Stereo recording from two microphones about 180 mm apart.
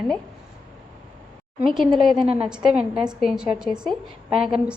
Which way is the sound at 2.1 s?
30° right (ahead or behind).